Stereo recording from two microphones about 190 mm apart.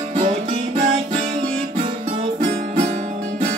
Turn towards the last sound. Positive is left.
turn(degrees=-35)  # may be behind; listen again after turning